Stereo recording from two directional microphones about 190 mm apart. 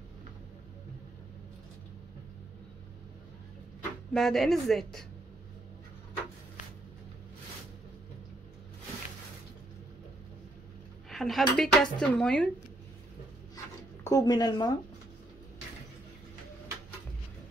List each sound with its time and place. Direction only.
4.1 s a woman's voice: centre (ahead or behind)
11.1 s speech: centre (ahead or behind)
14.0 s speech: 20° left (ahead or behind)